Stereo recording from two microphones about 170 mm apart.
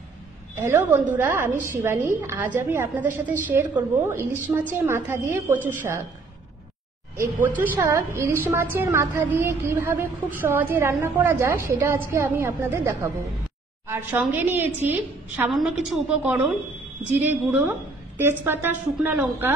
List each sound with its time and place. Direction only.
0.6 s a woman's voice: 15° right (ahead or behind)
7.8 s a woman's voice: 15° right (ahead or behind)